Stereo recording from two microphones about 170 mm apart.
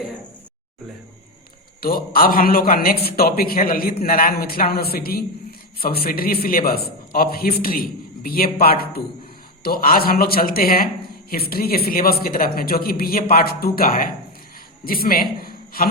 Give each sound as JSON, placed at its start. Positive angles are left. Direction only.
{"t": 1.8, "sound": "a man's voice", "side_deg": 60}